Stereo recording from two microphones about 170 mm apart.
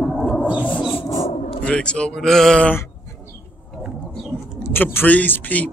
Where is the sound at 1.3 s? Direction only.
45° left (ahead or behind).